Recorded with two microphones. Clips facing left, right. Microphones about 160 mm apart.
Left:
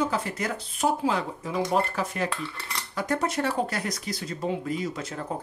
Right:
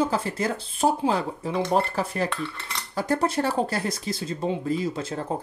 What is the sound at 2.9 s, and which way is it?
Speech, 30° right (ahead or behind).